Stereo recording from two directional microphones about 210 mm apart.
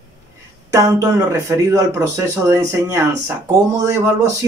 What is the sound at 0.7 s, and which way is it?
Speech, 15° right (ahead or behind).